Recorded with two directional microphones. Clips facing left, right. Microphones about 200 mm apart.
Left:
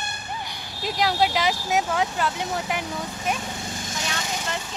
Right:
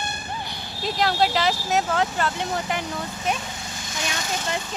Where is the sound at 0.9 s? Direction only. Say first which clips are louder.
Even; 10° left (ahead or behind).